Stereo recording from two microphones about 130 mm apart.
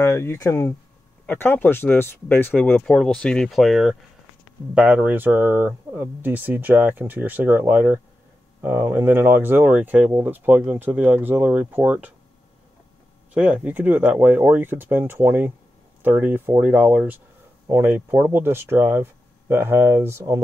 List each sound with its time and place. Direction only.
0.0 s speech: 20° left (ahead or behind); by 12.1 s 10° right (ahead or behind)
13.3 s speech: 10° right (ahead or behind)